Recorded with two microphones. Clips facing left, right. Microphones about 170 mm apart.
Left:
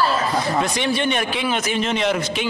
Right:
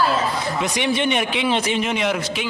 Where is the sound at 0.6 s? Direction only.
20° right (ahead or behind).